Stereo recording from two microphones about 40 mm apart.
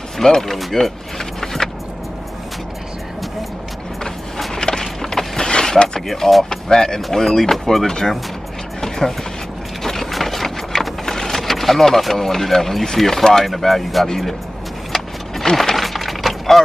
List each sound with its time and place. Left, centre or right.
0.2 s speech: centre
1.4 s vehicle: centre
4.6 s vehicle: centre
5.9 s speech: centre
8.8 s a sound: centre
9.8 s vehicle: centre
13.5 s speech: centre
14.9 s vehicle: centre
15.5 s a sound: centre